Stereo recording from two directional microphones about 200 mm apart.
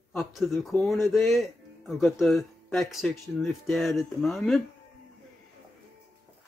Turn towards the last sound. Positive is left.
turn(degrees=0)  # may be behind; listen again after turning